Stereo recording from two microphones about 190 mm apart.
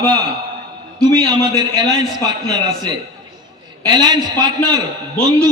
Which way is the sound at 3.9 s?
20° right (ahead or behind).